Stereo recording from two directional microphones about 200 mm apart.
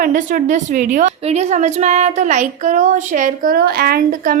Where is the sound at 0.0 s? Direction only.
40° right (ahead or behind).